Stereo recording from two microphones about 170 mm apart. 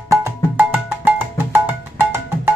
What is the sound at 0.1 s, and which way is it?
Music, 15° right (ahead or behind).